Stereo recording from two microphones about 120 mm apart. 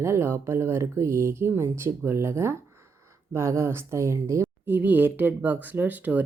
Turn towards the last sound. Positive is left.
turn(degrees=-15)  # may be behind; listen again after turning